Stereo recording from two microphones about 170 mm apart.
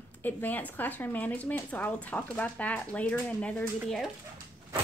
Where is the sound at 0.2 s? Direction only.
10° left (ahead or behind).